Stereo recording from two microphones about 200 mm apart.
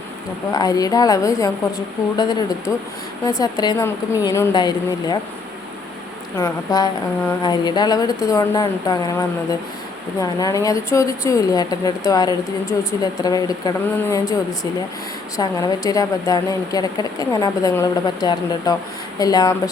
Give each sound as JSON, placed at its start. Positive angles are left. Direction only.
{"t": 0.5, "sound": "a woman's voice", "side_deg": 20}
{"t": 6.3, "sound": "a woman's voice", "side_deg": 15}